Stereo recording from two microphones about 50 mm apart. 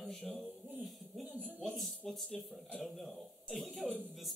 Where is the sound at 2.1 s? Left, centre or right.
Centre.